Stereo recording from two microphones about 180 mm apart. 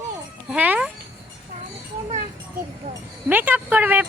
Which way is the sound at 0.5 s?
5° right (ahead or behind).